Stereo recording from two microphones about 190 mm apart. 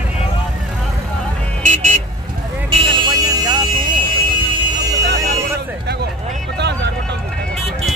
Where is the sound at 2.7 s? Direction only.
25° right (ahead or behind).